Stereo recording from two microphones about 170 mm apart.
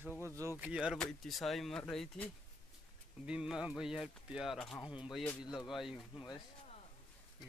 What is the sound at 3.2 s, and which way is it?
A man's voice, 5° right (ahead or behind).